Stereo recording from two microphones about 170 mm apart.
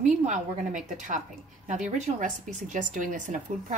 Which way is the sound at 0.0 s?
45° right (ahead or behind).